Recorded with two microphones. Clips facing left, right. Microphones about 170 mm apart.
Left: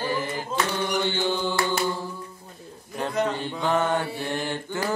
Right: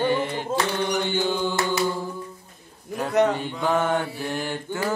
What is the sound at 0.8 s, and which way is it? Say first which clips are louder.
Mantra: right 1 dB; 15° right (ahead or behind).